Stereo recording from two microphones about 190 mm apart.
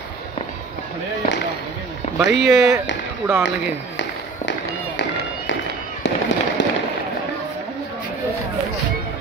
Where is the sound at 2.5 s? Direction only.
15° right (ahead or behind).